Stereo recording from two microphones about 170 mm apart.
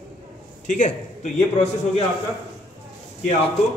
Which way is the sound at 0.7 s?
50° left (ahead or behind).